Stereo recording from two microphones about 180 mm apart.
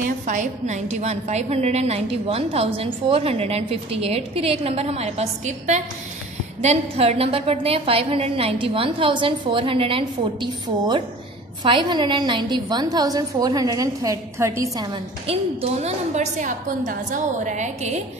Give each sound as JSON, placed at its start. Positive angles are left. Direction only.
{"t": 0.0, "sound": "a woman's voice", "side_deg": -45}
{"t": 15.2, "sound": "a woman's voice", "side_deg": -35}